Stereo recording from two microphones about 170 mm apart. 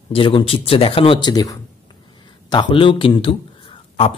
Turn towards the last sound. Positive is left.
turn(degrees=30)  # may be behind; listen again after turning